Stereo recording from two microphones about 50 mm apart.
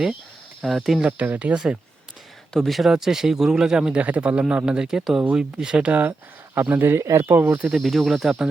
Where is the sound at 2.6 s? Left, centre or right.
Centre.